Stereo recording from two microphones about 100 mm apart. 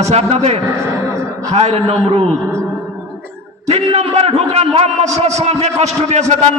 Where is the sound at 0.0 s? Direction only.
90° right.